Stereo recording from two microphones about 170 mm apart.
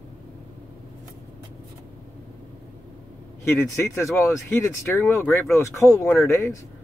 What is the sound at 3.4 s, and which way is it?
Speech, 15° left (ahead or behind).